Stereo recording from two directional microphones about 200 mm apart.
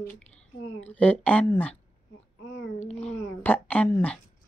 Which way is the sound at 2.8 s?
35° left (ahead or behind).